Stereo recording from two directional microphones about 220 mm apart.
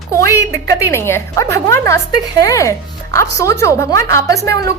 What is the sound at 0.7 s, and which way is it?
A woman's voice, 10° left (ahead or behind).